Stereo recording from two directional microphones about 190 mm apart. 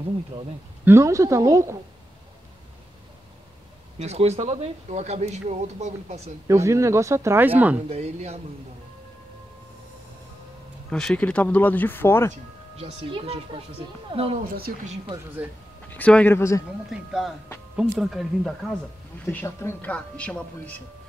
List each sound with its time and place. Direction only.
0.8 s speech: 15° right (ahead or behind)
4.0 s speech: 35° right (ahead or behind)
6.4 s speech: 15° right (ahead or behind)
7.9 s speech: 35° right (ahead or behind)
10.9 s a man's voice: 5° left (ahead or behind)
12.7 s speech: 30° right (ahead or behind)
14.4 s a woman's voice: 50° right (ahead or behind)
15.9 s a man's voice: 5° left (ahead or behind)
16.9 s speech: 5° right (ahead or behind)
19.2 s a man's voice: 15° left (ahead or behind)